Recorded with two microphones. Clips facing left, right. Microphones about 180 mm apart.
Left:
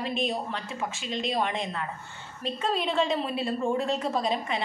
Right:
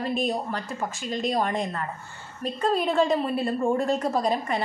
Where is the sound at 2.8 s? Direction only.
50° right (ahead or behind).